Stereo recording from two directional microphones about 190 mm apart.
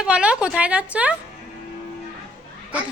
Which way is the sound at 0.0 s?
5° right (ahead or behind).